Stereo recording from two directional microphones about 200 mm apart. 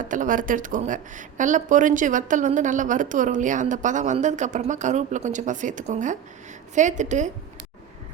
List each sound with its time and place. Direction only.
0.0 s speech: 40° right (ahead or behind)